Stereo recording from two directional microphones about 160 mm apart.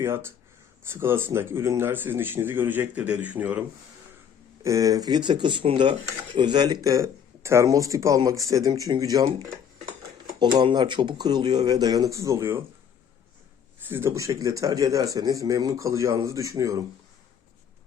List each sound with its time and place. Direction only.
0.0 s speech: 15° right (ahead or behind)
4.6 s speech: 20° right (ahead or behind)
10.4 s speech: 30° right (ahead or behind)
13.7 s speech: 15° right (ahead or behind)